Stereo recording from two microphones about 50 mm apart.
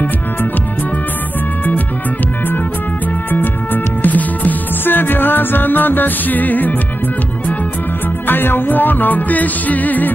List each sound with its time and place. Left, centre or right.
3.3 s music: left
8.3 s music: left